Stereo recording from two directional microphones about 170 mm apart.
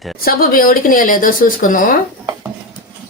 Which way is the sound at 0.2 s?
60° left (ahead or behind).